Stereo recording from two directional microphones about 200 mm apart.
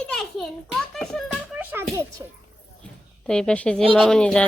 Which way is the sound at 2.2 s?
15° right (ahead or behind).